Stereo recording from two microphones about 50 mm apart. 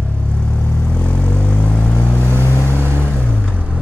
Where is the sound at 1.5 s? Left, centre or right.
Left.